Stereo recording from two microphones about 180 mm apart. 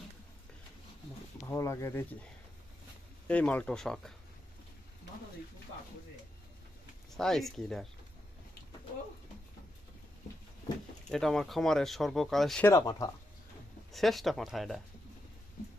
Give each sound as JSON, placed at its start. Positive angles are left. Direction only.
{"t": 1.4, "sound": "speech", "side_deg": 15}
{"t": 3.2, "sound": "speech", "side_deg": 10}
{"t": 7.2, "sound": "speech", "side_deg": 0}
{"t": 11.1, "sound": "speech", "side_deg": 0}
{"t": 12.6, "sound": "speech", "side_deg": 20}
{"t": 13.9, "sound": "speech", "side_deg": 0}